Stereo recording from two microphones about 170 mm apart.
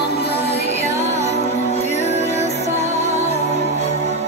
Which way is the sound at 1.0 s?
40° left (ahead or behind).